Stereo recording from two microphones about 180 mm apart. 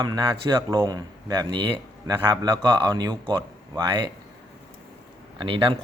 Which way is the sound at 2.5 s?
25° right (ahead or behind).